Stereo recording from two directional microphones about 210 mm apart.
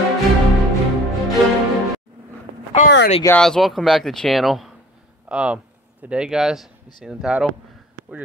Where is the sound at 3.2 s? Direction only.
5° left (ahead or behind).